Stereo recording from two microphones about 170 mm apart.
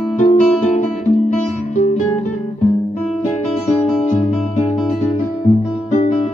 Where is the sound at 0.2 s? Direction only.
45° left (ahead or behind).